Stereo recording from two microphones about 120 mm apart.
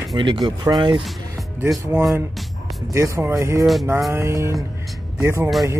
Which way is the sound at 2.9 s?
25° right (ahead or behind).